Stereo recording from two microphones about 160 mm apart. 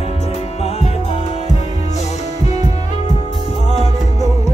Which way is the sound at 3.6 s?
45° left (ahead or behind).